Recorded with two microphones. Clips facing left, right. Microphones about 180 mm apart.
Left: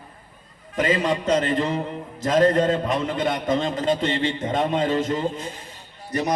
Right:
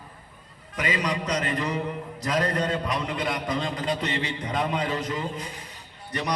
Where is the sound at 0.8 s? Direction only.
45° left (ahead or behind).